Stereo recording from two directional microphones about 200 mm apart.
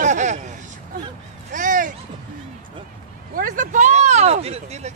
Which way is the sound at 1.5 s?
40° right (ahead or behind).